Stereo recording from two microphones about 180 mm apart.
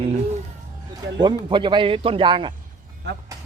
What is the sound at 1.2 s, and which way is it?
Speech, 25° right (ahead or behind).